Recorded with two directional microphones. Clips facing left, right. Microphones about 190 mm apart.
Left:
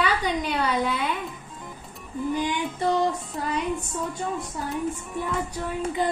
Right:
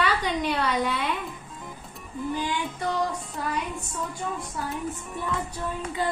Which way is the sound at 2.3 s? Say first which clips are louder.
Left 2 dB; 15° left (ahead or behind).